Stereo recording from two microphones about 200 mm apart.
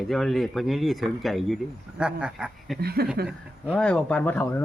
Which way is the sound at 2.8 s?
50° right (ahead or behind).